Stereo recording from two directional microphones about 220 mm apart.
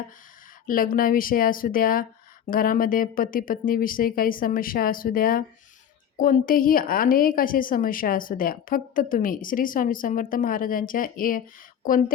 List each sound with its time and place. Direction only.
0.7 s a woman's voice: 40° left (ahead or behind)